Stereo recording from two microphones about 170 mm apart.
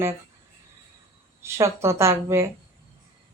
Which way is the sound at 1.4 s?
15° right (ahead or behind).